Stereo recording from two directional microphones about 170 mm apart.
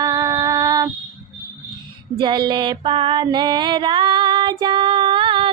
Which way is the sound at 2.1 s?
25° right (ahead or behind).